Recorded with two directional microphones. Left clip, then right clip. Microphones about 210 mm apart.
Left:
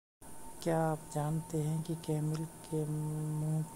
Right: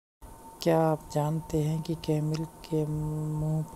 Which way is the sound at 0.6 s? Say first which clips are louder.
Right 8 dB; 35° right (ahead or behind).